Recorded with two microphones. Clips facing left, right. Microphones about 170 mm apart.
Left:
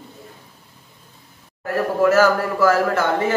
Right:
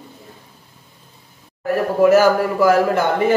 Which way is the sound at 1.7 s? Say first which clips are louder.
Right 4 dB; 15° right (ahead or behind).